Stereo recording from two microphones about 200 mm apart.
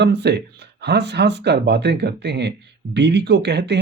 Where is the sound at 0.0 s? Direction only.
55° right (ahead or behind).